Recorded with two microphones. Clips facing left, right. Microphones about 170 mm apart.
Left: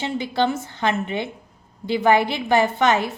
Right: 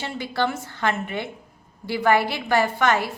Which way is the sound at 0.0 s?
20° left (ahead or behind).